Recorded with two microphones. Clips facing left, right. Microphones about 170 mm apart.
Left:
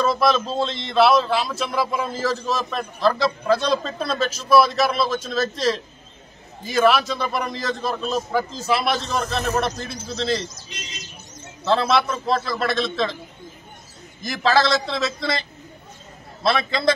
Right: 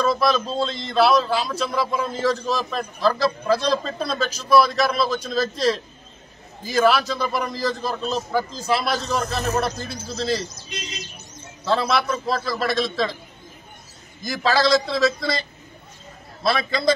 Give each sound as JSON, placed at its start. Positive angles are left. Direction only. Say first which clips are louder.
{"t": 0.0, "sound": "a man's voice", "louder": "left 1 dB", "side_deg": 0}
{"t": 11.6, "sound": "a man's voice", "louder": "left 2 dB", "side_deg": 0}
{"t": 14.2, "sound": "a man's voice", "louder": "left 1 dB", "side_deg": 0}